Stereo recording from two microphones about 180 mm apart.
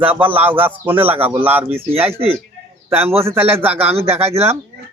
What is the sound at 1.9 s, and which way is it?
A man's voice, 35° right (ahead or behind).